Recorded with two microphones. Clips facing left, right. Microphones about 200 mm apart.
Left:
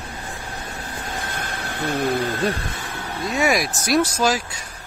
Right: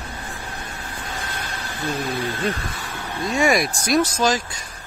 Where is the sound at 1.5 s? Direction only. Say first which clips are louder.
Left 3 dB; 60° left (ahead or behind).